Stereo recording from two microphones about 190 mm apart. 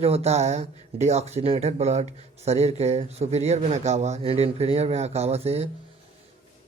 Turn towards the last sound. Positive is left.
turn(degrees=-30)  # may be behind; listen again after turning